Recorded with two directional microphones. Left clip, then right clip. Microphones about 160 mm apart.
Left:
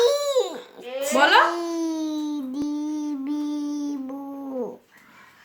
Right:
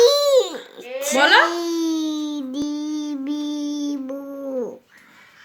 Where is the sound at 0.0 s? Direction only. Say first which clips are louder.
Right 6 dB; centre (ahead or behind).